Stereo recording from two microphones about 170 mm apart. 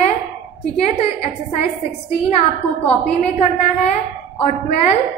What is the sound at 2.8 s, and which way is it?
Speech, 40° left (ahead or behind).